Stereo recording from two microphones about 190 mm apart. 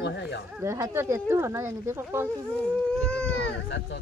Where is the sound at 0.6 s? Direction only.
15° right (ahead or behind).